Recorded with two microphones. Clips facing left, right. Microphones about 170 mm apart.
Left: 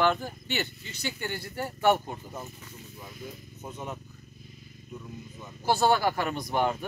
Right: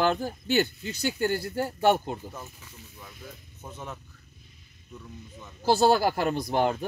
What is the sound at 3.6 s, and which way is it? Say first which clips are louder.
Speech: left 2 dB; 10° left (ahead or behind).